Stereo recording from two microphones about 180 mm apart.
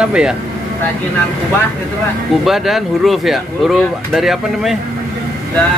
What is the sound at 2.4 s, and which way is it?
Speech, centre (ahead or behind).